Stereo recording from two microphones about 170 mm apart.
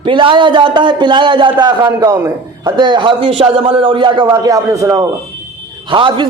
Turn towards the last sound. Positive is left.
turn(degrees=-30)  # may be behind; listen again after turning